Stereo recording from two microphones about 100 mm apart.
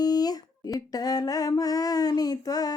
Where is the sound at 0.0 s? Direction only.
40° left (ahead or behind).